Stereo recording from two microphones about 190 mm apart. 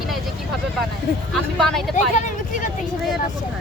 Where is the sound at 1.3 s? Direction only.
Centre (ahead or behind).